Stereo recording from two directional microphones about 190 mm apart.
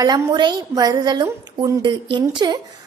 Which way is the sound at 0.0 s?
20° right (ahead or behind).